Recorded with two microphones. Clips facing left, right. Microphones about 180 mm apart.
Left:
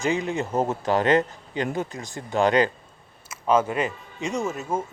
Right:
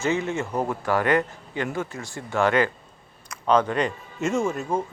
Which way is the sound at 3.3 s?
5° left (ahead or behind).